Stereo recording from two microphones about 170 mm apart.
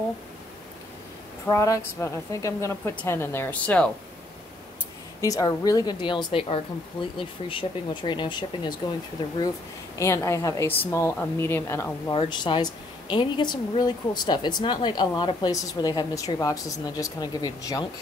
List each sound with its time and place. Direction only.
1.5 s a woman's voice: 15° left (ahead or behind)
5.2 s a woman's voice: 20° left (ahead or behind)
9.9 s a woman's voice: 15° left (ahead or behind)
12.1 s a woman's voice: 30° left (ahead or behind)